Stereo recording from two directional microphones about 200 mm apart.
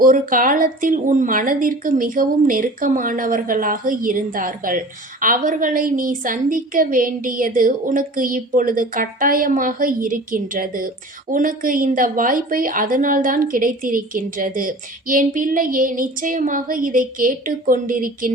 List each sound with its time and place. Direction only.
0.0 s a woman's voice: 45° right (ahead or behind)